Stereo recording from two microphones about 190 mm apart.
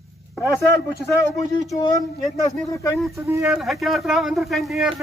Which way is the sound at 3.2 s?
15° right (ahead or behind).